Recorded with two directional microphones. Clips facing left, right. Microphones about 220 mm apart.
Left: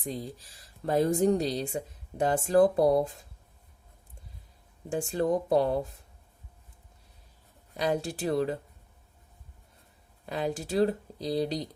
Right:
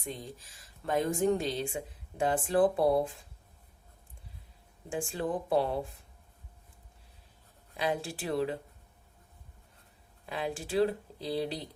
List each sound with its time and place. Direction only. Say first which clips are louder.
0.0 s speech: left 5 dB; 35° left (ahead or behind)
4.9 s speech: left 6 dB; 40° left (ahead or behind)
7.8 s speech: left 4 dB; 40° left (ahead or behind)
10.2 s speech: left 4 dB; 40° left (ahead or behind)